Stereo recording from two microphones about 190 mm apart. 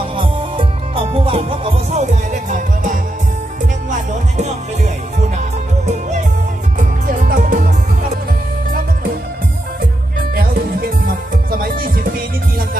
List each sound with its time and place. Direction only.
0.2 s music: 25° right (ahead or behind); by 3.0 s 45° right (ahead or behind)
4.4 s music: 40° right (ahead or behind)
10.3 s music: 50° right (ahead or behind)